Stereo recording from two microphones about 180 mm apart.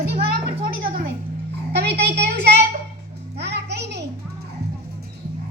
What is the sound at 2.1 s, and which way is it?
Speech, 65° right (ahead or behind).